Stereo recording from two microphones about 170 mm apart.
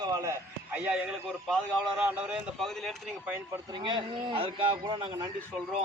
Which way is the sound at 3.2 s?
10° right (ahead or behind).